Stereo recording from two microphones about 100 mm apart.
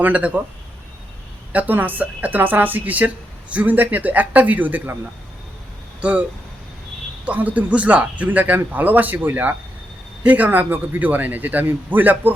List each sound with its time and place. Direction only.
0.0 s speech: 15° right (ahead or behind)
1.5 s speech: 15° right (ahead or behind)
6.0 s speech: 15° right (ahead or behind)
7.3 s speech: 15° right (ahead or behind)